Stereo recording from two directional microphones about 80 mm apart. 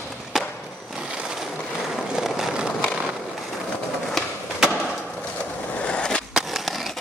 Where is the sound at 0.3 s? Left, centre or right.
Centre.